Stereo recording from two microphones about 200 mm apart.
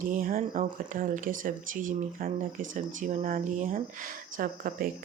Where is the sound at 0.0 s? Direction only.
45° right (ahead or behind).